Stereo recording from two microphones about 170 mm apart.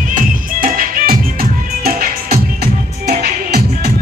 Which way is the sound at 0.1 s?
55° right (ahead or behind).